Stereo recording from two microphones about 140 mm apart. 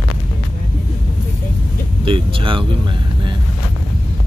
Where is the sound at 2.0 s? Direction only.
35° right (ahead or behind).